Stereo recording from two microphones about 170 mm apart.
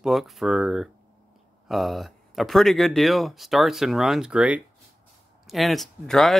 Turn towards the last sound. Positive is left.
turn(degrees=0)  # may be behind; listen again after turning